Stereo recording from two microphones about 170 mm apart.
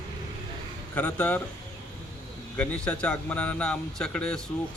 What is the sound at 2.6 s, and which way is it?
A man's voice, 10° left (ahead or behind).